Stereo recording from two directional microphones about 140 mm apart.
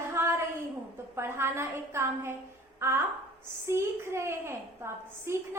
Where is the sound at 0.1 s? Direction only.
15° right (ahead or behind).